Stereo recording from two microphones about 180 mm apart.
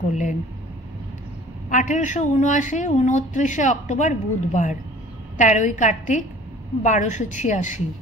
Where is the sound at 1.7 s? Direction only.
45° left (ahead or behind).